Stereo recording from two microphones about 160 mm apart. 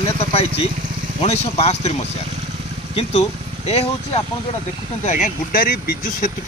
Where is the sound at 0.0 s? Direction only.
35° left (ahead or behind).